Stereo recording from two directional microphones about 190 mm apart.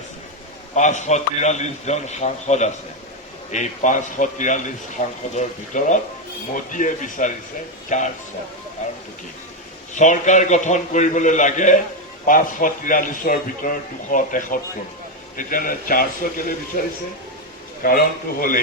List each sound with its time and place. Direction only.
0.8 s a man's voice: 40° left (ahead or behind)
8.8 s a sound: 40° left (ahead or behind)
9.9 s a man's voice: 40° left (ahead or behind)
17.8 s a man's voice: 50° left (ahead or behind)